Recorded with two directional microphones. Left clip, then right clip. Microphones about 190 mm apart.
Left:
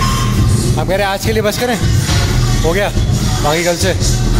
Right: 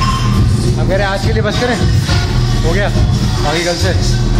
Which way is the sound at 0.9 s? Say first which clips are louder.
Even; 40° left (ahead or behind).